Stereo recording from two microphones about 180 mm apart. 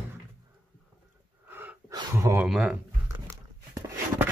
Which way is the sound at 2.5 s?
5° right (ahead or behind).